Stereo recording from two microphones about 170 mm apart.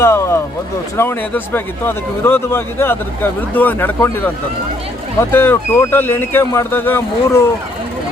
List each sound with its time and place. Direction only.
0.0 s music: 15° left (ahead or behind)
0.9 s speech: 15° left (ahead or behind)
5.3 s speech: 15° left (ahead or behind)